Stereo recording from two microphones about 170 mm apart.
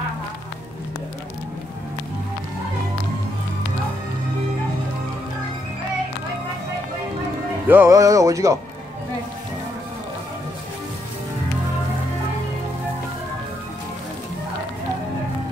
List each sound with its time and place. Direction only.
7.6 s music: 10° right (ahead or behind)